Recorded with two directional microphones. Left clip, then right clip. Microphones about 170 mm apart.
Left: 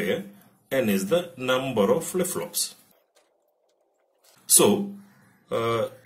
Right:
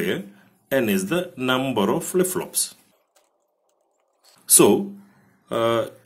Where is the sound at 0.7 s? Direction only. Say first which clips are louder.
Right 2 dB; 50° right (ahead or behind).